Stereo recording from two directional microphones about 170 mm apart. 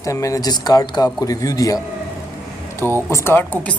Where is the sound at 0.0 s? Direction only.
20° left (ahead or behind).